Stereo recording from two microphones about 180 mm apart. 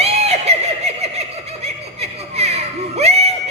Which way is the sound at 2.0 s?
35° right (ahead or behind).